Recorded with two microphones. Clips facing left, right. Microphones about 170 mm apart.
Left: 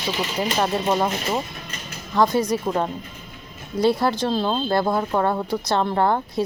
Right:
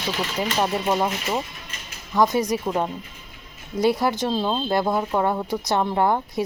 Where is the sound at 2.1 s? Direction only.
15° right (ahead or behind).